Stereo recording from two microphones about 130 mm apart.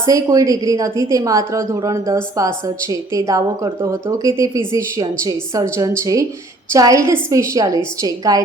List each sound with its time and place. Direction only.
0.0 s a woman's voice: 25° right (ahead or behind)
6.7 s a woman's voice: 25° right (ahead or behind)